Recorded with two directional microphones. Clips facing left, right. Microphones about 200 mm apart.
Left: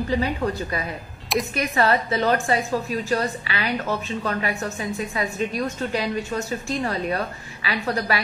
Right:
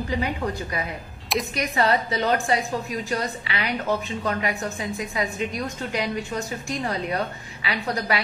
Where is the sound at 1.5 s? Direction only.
15° right (ahead or behind).